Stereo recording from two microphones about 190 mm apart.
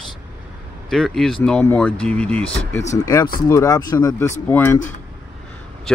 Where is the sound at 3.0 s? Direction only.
20° left (ahead or behind).